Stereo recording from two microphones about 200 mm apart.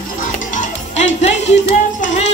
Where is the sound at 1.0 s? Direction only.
35° left (ahead or behind).